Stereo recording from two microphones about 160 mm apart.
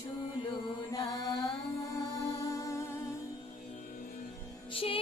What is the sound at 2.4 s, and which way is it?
Music, 20° left (ahead or behind).